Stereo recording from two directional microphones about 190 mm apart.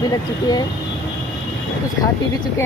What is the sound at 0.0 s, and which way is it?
Speech, 20° left (ahead or behind).